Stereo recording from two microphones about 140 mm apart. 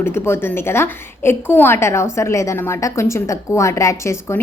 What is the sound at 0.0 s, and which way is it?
A woman's voice, 15° left (ahead or behind).